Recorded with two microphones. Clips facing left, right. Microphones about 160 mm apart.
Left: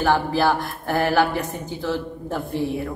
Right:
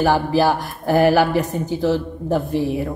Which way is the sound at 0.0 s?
15° right (ahead or behind).